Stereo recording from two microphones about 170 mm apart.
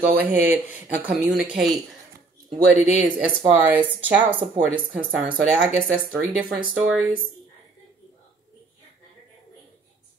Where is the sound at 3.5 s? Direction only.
10° right (ahead or behind).